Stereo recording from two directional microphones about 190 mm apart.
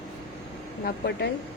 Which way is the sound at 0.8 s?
60° left (ahead or behind).